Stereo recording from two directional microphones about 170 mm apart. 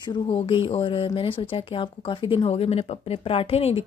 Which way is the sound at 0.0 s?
30° left (ahead or behind).